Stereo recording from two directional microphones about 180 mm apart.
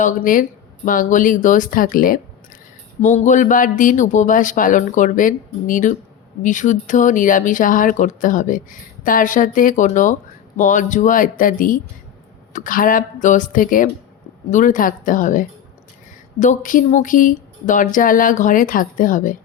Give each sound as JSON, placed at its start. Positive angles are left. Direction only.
{"t": 0.0, "sound": "speech", "side_deg": 45}